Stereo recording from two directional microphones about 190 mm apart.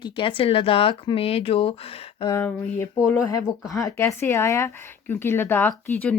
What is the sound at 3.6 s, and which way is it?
Speech, centre (ahead or behind).